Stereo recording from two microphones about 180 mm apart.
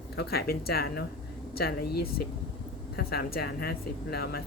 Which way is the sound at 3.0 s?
60° left (ahead or behind).